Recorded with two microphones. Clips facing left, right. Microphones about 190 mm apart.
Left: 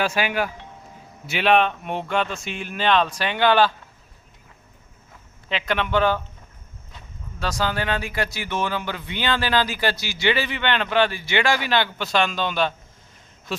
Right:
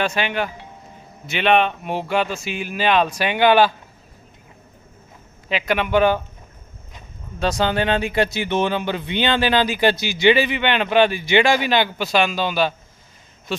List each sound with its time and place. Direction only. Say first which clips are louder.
0.0 s speech: right 1 dB; 5° left (ahead or behind); by 3.7 s 15° right (ahead or behind)
5.5 s a man's voice: right 3 dB; 10° right (ahead or behind)